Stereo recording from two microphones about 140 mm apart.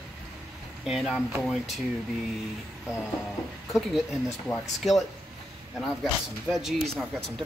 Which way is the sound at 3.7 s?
Centre (ahead or behind).